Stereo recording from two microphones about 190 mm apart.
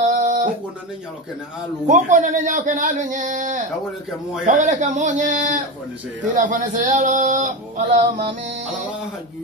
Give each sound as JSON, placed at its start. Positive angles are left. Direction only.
{"t": 0.0, "sound": "a sound", "side_deg": -40}
{"t": 1.9, "sound": "a man's voice", "side_deg": -40}
{"t": 6.3, "sound": "male singing", "side_deg": -45}